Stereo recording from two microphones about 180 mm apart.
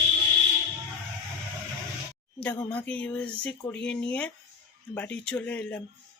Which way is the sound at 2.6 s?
5° left (ahead or behind).